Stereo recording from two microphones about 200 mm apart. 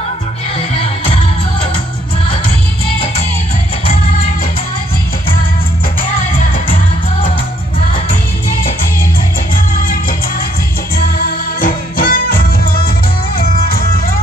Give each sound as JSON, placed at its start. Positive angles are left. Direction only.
{"t": 11.0, "sound": "music", "side_deg": 45}